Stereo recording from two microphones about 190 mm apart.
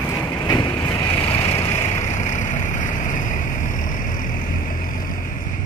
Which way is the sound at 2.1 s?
40° left (ahead or behind).